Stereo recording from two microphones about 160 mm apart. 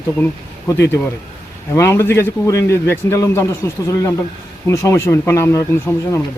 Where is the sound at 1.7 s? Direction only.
15° left (ahead or behind).